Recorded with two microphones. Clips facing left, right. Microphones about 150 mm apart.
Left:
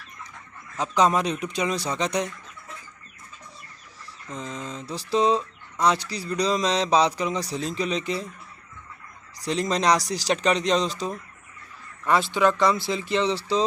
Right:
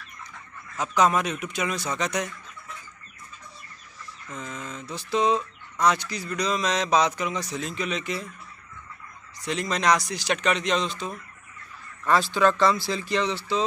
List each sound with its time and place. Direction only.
0.7 s speech: 30° left (ahead or behind)
4.3 s speech: 30° left (ahead or behind)
9.4 s speech: 35° left (ahead or behind)
12.0 s speech: 20° left (ahead or behind)